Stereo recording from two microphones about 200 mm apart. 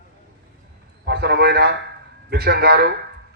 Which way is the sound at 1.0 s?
55° right (ahead or behind).